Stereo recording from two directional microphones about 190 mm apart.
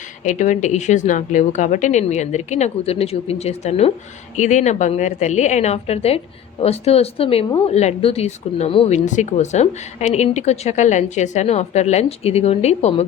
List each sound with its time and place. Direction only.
0.3 s a woman's voice: 40° left (ahead or behind)